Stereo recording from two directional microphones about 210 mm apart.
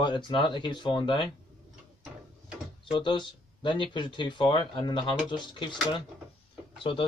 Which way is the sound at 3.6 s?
25° left (ahead or behind).